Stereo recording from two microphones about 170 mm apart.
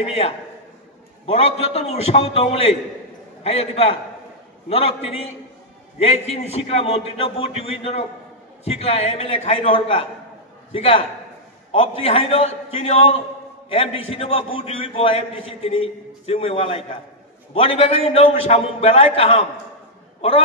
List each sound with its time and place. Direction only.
1.2 s a man's voice: 35° left (ahead or behind)